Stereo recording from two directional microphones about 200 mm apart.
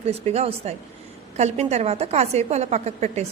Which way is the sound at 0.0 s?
30° right (ahead or behind).